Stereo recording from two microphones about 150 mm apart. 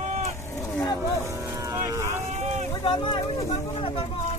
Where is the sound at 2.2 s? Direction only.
50° right (ahead or behind).